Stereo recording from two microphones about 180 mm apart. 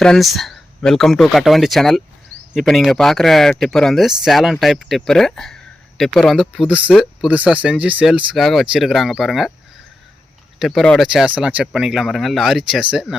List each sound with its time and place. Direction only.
0.0 s speech: centre (ahead or behind)
10.6 s speech: centre (ahead or behind)